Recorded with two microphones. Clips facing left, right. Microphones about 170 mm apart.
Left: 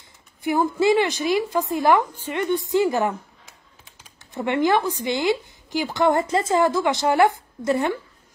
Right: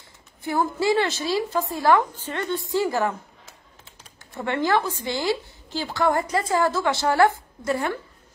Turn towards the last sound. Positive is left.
turn(degrees=20)  # may be behind; listen again after turning